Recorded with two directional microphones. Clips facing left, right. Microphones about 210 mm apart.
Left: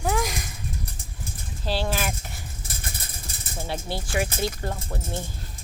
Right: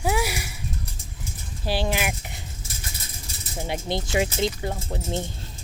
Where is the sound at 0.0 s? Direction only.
10° right (ahead or behind).